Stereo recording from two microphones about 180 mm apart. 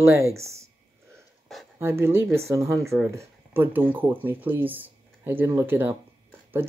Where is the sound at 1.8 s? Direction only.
15° right (ahead or behind).